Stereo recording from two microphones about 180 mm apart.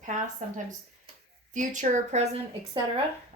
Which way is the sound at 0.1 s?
45° right (ahead or behind).